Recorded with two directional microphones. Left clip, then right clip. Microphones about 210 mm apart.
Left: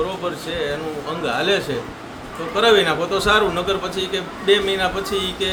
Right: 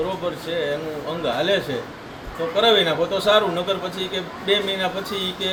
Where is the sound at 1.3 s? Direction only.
15° left (ahead or behind).